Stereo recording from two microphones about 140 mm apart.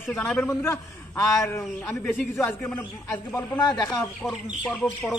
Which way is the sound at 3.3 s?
30° left (ahead or behind).